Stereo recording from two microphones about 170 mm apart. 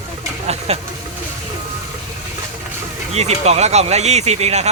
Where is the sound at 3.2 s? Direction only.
40° right (ahead or behind).